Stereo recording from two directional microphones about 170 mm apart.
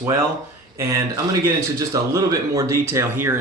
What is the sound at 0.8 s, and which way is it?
Speech, 15° right (ahead or behind).